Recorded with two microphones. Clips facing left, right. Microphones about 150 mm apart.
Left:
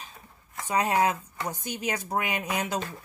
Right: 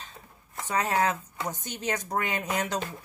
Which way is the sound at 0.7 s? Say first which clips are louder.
Left 2 dB; 15° left (ahead or behind).